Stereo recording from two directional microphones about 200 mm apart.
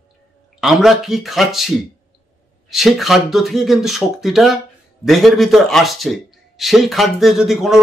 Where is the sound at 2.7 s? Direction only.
Centre (ahead or behind).